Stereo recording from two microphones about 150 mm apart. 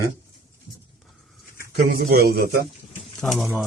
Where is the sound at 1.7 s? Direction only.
80° right.